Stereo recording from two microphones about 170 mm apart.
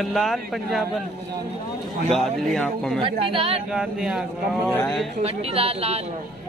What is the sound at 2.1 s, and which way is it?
Speech, centre (ahead or behind).